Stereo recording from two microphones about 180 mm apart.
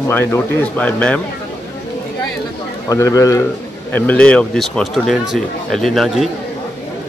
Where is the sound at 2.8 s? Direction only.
20° left (ahead or behind); by 6.3 s centre (ahead or behind).